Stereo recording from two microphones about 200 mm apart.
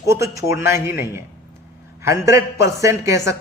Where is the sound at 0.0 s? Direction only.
15° right (ahead or behind).